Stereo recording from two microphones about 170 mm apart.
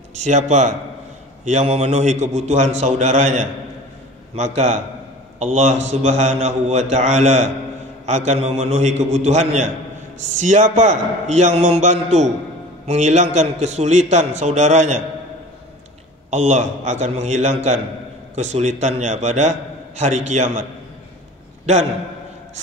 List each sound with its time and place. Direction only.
0.1 s a man's voice: 45° right (ahead or behind)
16.3 s a man's voice: 45° right (ahead or behind)